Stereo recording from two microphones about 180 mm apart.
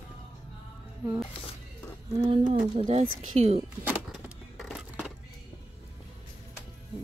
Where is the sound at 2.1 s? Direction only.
35° right (ahead or behind).